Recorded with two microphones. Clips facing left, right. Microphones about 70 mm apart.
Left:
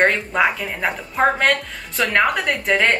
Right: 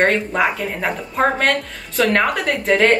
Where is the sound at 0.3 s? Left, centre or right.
Centre.